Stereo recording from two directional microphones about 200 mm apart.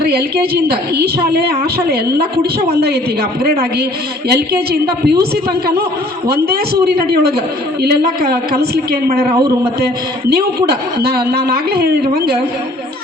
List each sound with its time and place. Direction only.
0.0 s a woman's voice: 50° right (ahead or behind)
2.8 s a woman's voice: 50° right (ahead or behind)
6.8 s a woman's voice: 50° right (ahead or behind)